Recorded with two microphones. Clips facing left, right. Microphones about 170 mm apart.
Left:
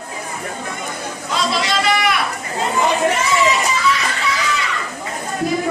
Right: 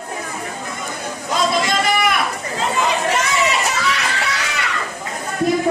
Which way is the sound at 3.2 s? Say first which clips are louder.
Left 2 dB; 70° right (ahead or behind).